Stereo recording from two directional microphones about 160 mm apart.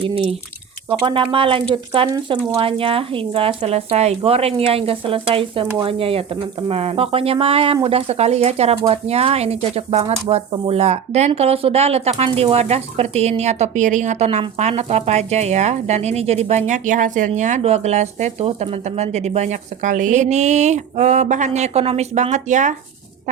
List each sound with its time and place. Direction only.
0.0 s speech: 35° right (ahead or behind)